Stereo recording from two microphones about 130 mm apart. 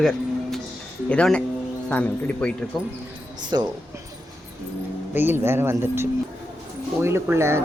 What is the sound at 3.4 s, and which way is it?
Speech, 35° right (ahead or behind).